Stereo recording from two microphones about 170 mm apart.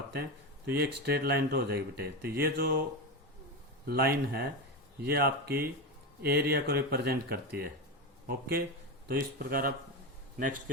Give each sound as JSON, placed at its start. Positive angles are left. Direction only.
{"t": 0.1, "sound": "speech", "side_deg": -70}
{"t": 3.8, "sound": "a man's voice", "side_deg": -65}